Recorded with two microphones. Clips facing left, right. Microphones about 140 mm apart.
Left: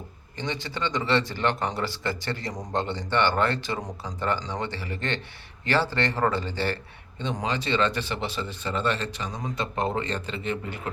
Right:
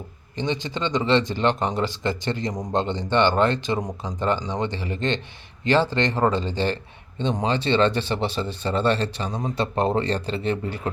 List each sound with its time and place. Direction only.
0.3 s speech: 20° right (ahead or behind)